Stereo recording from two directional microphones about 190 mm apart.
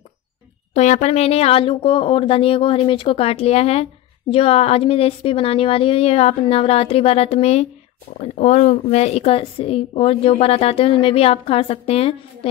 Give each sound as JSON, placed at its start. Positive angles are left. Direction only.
{"t": 0.7, "sound": "speech", "side_deg": 35}